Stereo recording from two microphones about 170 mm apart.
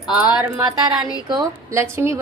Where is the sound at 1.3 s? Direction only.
20° right (ahead or behind).